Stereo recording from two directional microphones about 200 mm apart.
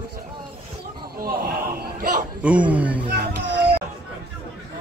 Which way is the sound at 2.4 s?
5° right (ahead or behind).